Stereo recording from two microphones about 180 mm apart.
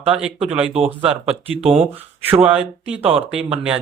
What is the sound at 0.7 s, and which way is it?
Speech, 30° right (ahead or behind).